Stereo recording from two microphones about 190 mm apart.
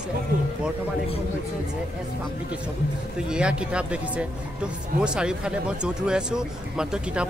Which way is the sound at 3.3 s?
5° right (ahead or behind).